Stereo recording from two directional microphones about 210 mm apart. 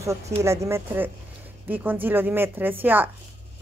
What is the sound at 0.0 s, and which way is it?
A woman's voice, 15° right (ahead or behind).